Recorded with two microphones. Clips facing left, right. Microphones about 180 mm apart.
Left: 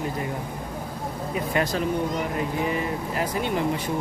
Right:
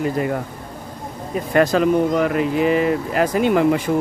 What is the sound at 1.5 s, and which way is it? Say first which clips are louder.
Speech: right 10 dB; 80° right.